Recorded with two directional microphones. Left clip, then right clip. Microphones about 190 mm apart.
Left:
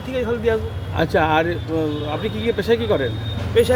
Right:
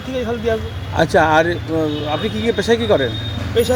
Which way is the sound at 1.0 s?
45° right (ahead or behind).